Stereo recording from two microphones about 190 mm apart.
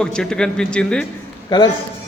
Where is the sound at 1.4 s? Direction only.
20° left (ahead or behind).